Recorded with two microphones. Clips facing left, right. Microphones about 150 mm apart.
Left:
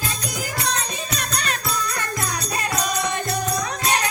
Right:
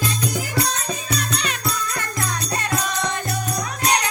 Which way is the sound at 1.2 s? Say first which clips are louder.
Right 2 dB; 50° left (ahead or behind).